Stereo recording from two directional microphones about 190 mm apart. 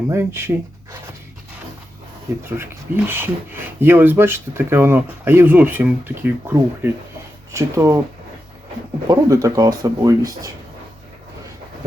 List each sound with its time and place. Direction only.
0.1 s speech: 15° right (ahead or behind)
2.4 s speech: 10° right (ahead or behind)
9.0 s speech: 20° right (ahead or behind)